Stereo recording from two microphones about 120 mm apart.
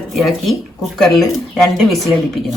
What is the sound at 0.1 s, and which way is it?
Speech, centre (ahead or behind).